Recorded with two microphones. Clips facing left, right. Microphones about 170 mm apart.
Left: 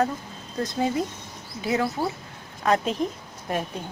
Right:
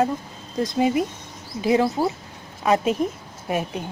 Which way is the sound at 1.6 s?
25° right (ahead or behind).